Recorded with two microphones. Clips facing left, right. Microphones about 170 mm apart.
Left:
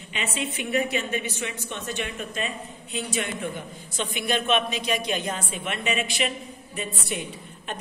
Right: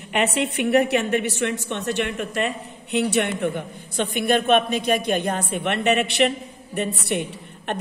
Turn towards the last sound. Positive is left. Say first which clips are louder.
# right 6 dB
turn(degrees=-65)  # may be behind; listen again after turning